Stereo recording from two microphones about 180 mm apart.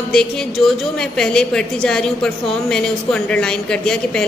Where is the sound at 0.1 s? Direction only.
5° left (ahead or behind).